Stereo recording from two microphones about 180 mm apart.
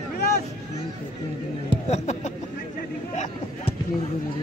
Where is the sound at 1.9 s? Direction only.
40° left (ahead or behind).